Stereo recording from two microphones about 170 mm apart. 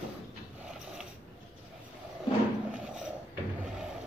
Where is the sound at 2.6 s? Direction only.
5° right (ahead or behind).